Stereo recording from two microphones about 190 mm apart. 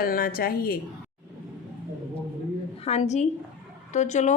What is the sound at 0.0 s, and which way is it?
Speech, 50° left (ahead or behind).